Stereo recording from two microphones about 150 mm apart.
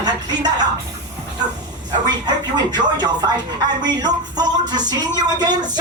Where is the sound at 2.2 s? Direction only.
30° right (ahead or behind).